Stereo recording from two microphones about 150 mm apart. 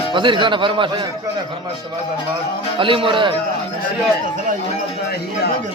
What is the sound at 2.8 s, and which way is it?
Speech, 35° right (ahead or behind).